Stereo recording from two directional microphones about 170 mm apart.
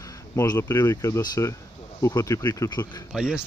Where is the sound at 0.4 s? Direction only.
15° left (ahead or behind).